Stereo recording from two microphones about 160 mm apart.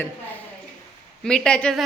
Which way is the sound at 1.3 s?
5° left (ahead or behind).